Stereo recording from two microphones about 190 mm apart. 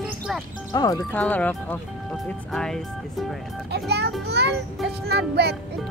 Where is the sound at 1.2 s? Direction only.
10° left (ahead or behind).